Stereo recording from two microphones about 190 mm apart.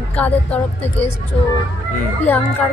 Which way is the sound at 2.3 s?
10° left (ahead or behind).